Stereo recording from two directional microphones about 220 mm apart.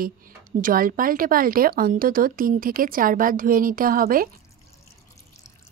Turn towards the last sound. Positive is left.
turn(degrees=-40)  # may be behind; listen again after turning